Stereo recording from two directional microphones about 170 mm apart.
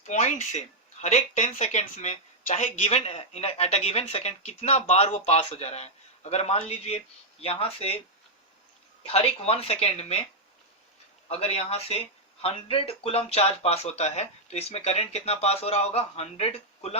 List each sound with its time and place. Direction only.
0.0 s speech: 45° left (ahead or behind)
9.0 s speech: 35° left (ahead or behind)
11.3 s speech: 35° left (ahead or behind)